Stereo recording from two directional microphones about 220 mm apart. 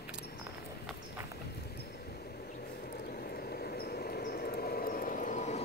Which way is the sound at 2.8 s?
45° left (ahead or behind).